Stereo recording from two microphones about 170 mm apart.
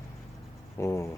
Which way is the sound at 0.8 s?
15° left (ahead or behind).